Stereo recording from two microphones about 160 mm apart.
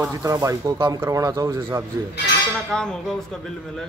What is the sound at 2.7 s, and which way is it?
Speech, 5° left (ahead or behind).